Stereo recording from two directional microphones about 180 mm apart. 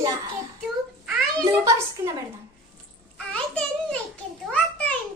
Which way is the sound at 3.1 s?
5° left (ahead or behind).